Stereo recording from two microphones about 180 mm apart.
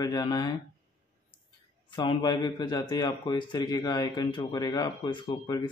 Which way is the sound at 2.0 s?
25° left (ahead or behind).